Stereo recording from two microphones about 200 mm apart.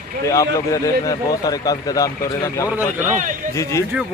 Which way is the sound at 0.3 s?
15° left (ahead or behind).